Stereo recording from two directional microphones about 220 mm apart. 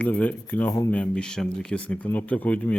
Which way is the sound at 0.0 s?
5° left (ahead or behind).